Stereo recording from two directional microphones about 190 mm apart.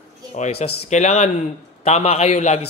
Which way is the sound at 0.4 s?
35° left (ahead or behind).